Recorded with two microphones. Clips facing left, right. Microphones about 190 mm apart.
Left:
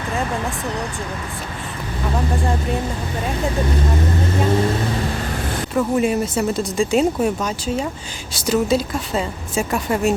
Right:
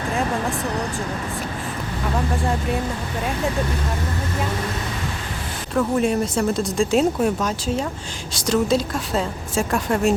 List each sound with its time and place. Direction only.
5.7 s speech: 5° left (ahead or behind)